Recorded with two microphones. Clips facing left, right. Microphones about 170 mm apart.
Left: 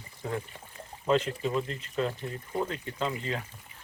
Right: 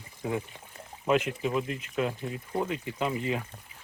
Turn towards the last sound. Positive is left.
turn(degrees=-15)  # may be behind; listen again after turning